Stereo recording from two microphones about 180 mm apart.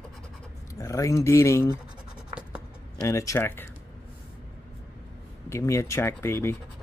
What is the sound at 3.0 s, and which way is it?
Speech, 15° left (ahead or behind).